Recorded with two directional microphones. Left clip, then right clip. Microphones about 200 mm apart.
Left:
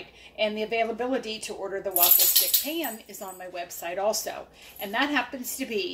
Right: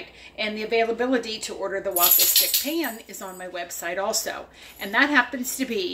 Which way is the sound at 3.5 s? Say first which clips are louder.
Right 4 dB; 15° right (ahead or behind).